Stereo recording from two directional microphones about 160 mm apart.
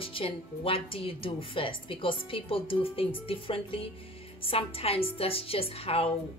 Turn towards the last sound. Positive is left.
turn(degrees=35)  # may be behind; listen again after turning